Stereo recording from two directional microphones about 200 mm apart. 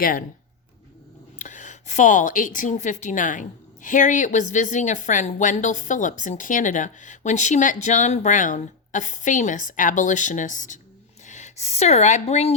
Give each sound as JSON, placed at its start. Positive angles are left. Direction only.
{"t": 0.0, "sound": "speech", "side_deg": 45}
{"t": 1.4, "sound": "a woman's voice", "side_deg": 40}